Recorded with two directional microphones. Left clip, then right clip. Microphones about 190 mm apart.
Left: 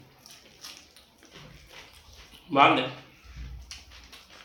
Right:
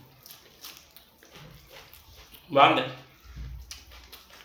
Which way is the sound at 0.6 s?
10° left (ahead or behind).